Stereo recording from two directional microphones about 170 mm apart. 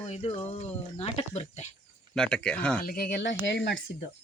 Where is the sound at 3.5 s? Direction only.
70° left (ahead or behind).